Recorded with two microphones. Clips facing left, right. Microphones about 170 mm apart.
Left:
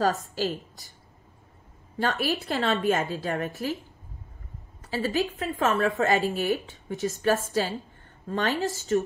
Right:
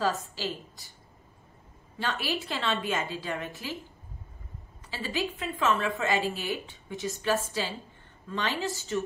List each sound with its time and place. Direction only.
0.3 s a woman's voice: 40° left (ahead or behind)
2.0 s a woman's voice: 45° left (ahead or behind)
4.8 s a woman's voice: 45° left (ahead or behind)